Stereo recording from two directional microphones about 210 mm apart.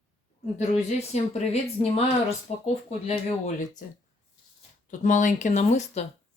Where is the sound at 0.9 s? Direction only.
30° left (ahead or behind).